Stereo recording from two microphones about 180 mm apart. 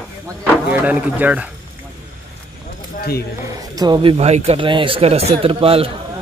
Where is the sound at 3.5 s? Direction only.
20° right (ahead or behind).